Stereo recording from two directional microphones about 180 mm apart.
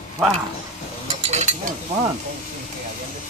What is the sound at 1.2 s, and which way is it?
Stir, 40° right (ahead or behind).